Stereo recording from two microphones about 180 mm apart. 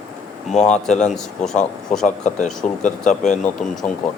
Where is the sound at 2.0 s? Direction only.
40° left (ahead or behind).